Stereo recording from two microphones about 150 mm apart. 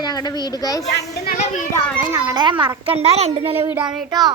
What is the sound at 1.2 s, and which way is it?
Speech, 70° left (ahead or behind).